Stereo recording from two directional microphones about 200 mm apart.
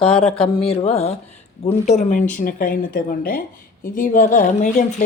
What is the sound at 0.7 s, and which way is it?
A woman's voice, 30° left (ahead or behind).